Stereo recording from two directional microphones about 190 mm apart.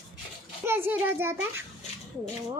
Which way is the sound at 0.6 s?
10° right (ahead or behind).